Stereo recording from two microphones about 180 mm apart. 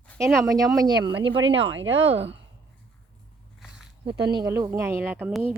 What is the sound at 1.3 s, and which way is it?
Speech, 90° right.